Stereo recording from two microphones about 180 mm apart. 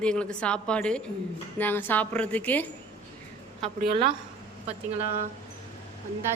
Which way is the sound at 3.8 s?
60° right (ahead or behind).